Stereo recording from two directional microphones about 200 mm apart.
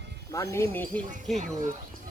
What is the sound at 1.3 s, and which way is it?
Speech, 40° right (ahead or behind).